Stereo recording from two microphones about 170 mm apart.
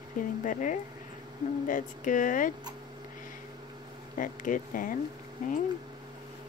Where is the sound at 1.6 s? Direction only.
50° left (ahead or behind).